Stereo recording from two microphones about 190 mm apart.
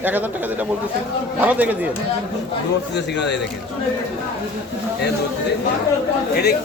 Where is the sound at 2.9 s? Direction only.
65° left (ahead or behind).